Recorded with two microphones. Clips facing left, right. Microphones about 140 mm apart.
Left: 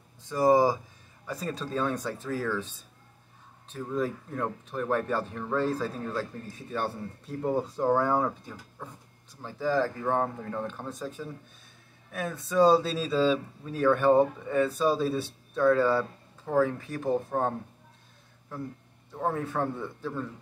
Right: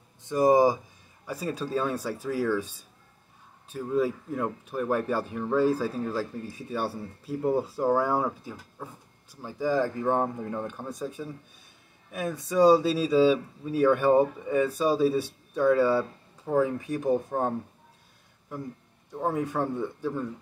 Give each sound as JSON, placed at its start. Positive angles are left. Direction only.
{"t": 0.2, "sound": "speech", "side_deg": -15}
{"t": 3.7, "sound": "speech", "side_deg": -5}
{"t": 19.1, "sound": "speech", "side_deg": -10}